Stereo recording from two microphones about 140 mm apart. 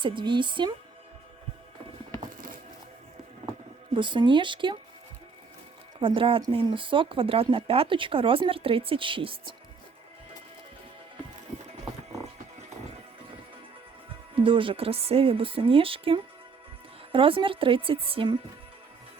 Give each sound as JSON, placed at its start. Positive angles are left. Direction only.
{"t": 0.0, "sound": "speech", "side_deg": -35}
{"t": 3.9, "sound": "speech", "side_deg": -35}
{"t": 6.0, "sound": "speech", "side_deg": -40}
{"t": 14.3, "sound": "speech", "side_deg": -40}